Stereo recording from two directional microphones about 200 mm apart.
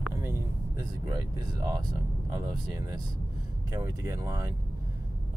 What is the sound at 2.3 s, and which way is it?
Speech, 15° right (ahead or behind).